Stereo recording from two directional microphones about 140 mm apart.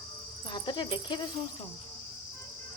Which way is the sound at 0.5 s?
35° left (ahead or behind).